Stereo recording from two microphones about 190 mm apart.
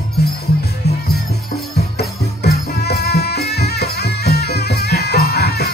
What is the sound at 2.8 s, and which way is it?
Music, 60° left (ahead or behind).